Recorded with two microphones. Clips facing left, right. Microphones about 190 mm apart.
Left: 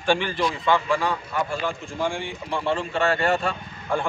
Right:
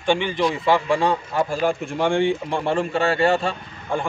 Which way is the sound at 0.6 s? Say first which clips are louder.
Right 3 dB; 30° right (ahead or behind).